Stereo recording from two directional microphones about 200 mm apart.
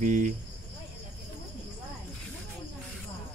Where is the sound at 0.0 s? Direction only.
35° right (ahead or behind).